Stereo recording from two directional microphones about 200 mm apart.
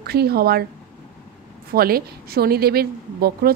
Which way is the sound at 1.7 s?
50° right (ahead or behind).